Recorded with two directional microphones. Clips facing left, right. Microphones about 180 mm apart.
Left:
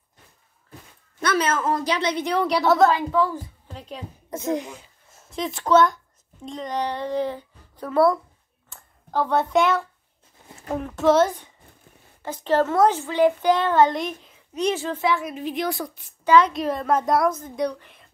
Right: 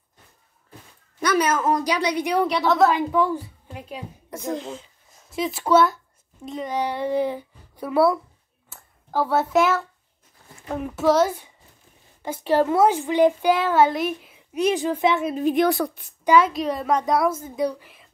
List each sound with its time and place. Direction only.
1.2 s a woman's voice: 10° right (ahead or behind)
2.4 s a woman's voice: 5° left (ahead or behind)
2.9 s speech: 15° right (ahead or behind)
4.3 s speech: 20° left (ahead or behind)
5.3 s a woman's voice: 5° right (ahead or behind)
8.6 s a sound: 5° right (ahead or behind)
10.8 s speech: 5° right (ahead or behind)
15.3 s a woman's voice: 50° right (ahead or behind)
16.3 s a woman's voice: 10° right (ahead or behind)